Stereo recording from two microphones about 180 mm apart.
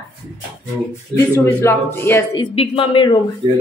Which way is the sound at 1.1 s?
15° left (ahead or behind).